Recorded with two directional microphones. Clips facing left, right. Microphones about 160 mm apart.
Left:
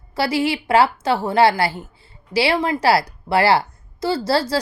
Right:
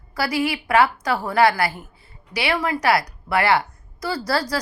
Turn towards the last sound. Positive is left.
turn(degrees=25)  # may be behind; listen again after turning